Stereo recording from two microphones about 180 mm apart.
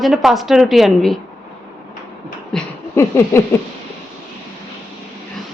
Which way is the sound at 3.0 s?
15° left (ahead or behind).